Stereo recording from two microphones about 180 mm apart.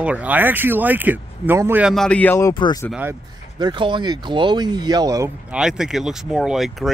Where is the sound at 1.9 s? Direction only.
5° left (ahead or behind); by 2.8 s 20° left (ahead or behind).